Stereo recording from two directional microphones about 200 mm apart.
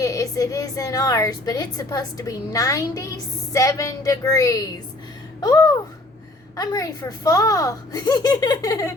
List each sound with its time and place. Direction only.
0.0 s a woman's voice: 15° left (ahead or behind)
5.4 s a sound: 20° left (ahead or behind)
6.6 s a woman's voice: 20° left (ahead or behind)